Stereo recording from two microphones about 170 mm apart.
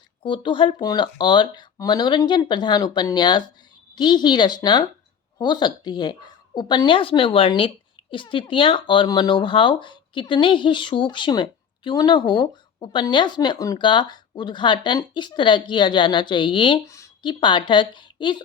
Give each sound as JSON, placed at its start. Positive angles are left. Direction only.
{"t": 0.2, "sound": "speech", "side_deg": 30}
{"t": 16.8, "sound": "speech", "side_deg": 20}